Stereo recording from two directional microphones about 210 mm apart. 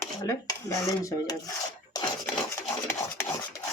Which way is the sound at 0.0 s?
15° left (ahead or behind).